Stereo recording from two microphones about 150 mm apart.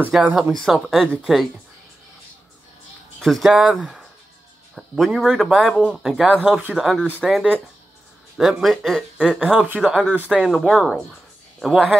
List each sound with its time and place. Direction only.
0.1 s speech: 5° right (ahead or behind)
3.2 s speech: centre (ahead or behind)